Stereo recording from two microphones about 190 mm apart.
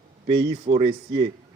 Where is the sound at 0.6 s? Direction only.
30° right (ahead or behind).